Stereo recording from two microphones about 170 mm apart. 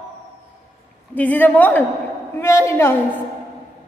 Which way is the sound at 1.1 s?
10° left (ahead or behind).